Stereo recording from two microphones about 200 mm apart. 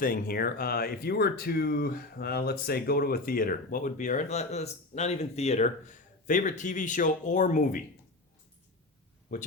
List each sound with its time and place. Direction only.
0.0 s speech: 45° left (ahead or behind)